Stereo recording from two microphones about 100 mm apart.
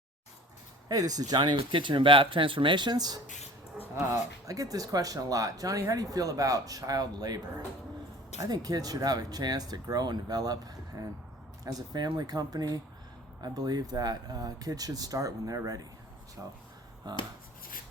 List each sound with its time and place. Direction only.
0.9 s speech: 40° right (ahead or behind)
4.4 s speech: 35° right (ahead or behind)
16.4 s speech: 25° right (ahead or behind)
17.1 s speech: 45° right (ahead or behind)